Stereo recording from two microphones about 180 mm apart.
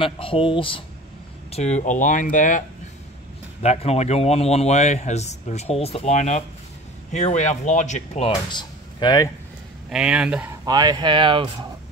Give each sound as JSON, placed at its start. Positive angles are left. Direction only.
{"t": 0.0, "sound": "speech", "side_deg": 30}
{"t": 3.6, "sound": "speech", "side_deg": 35}
{"t": 8.5, "sound": "speech", "side_deg": 25}
{"t": 9.8, "sound": "speech", "side_deg": -5}
{"t": 10.6, "sound": "speech", "side_deg": -20}